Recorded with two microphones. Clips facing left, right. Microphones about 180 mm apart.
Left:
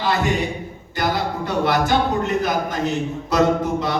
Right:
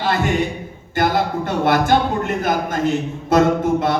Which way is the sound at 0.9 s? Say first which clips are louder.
Right 4 dB; 50° right (ahead or behind).